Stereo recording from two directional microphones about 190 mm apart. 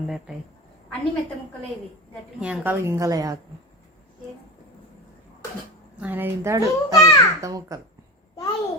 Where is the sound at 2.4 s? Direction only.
10° right (ahead or behind).